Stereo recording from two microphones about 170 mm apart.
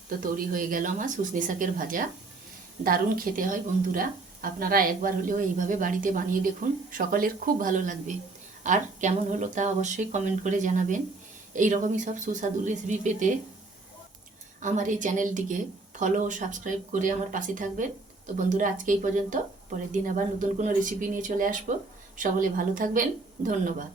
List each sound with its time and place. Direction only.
0.2 s speech: 55° right (ahead or behind)
14.6 s speech: 45° right (ahead or behind)